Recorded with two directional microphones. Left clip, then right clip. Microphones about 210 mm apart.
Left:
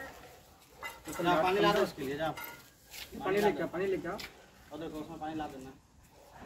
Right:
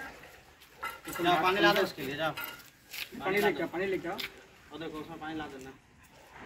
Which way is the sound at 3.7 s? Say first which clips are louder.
Right 1 dB; 35° right (ahead or behind).